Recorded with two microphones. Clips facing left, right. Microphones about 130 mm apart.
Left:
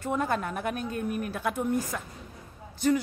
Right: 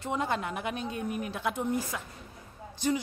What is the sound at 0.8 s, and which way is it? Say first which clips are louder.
Speech: left 2 dB; 20° right (ahead or behind).